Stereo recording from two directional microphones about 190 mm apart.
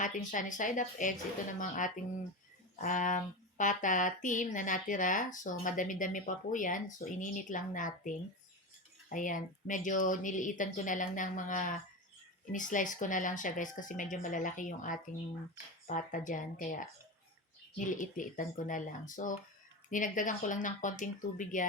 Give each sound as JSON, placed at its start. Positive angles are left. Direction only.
{"t": 0.0, "sound": "speech", "side_deg": 45}